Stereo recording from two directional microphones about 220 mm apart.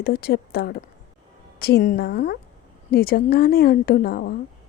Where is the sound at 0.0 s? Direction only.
45° left (ahead or behind).